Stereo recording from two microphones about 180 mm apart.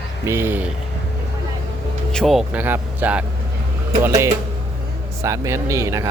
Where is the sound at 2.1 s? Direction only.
Centre (ahead or behind).